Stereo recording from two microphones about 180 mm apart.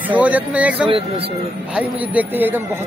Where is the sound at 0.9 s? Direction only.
30° right (ahead or behind).